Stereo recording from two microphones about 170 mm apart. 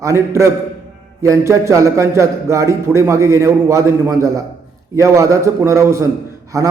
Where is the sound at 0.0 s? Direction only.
15° right (ahead or behind).